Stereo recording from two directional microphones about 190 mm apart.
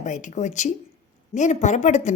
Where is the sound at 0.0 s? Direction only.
40° left (ahead or behind).